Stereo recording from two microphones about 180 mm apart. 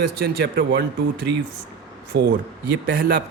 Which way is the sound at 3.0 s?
55° right (ahead or behind).